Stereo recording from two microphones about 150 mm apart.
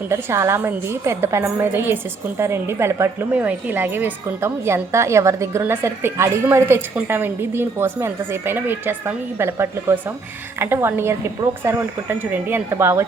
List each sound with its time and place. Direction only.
0.1 s a woman's voice: 20° right (ahead or behind)